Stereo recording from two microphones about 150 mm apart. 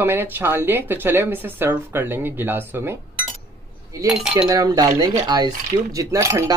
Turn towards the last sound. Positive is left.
turn(degrees=-20)  # may be behind; listen again after turning